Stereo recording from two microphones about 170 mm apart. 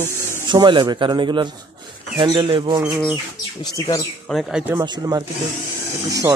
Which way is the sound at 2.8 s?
5° right (ahead or behind).